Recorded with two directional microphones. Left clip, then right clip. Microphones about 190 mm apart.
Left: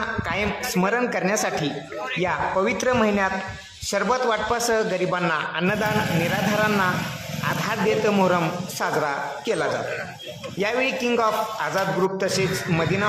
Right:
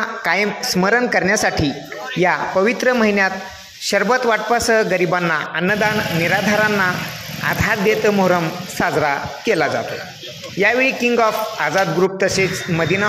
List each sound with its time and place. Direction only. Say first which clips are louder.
0.2 s a man's voice: right 7 dB; 20° right (ahead or behind)